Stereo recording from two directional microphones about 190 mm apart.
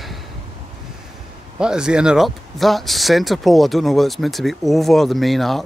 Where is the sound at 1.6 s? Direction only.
5° right (ahead or behind).